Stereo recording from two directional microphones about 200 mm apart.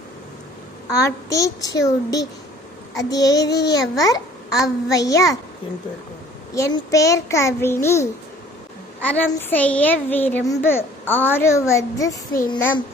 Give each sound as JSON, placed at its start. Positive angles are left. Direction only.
{"t": 0.9, "sound": "a child's voice", "side_deg": 15}
{"t": 6.5, "sound": "a child's voice", "side_deg": 15}
{"t": 9.3, "sound": "a child's voice", "side_deg": 10}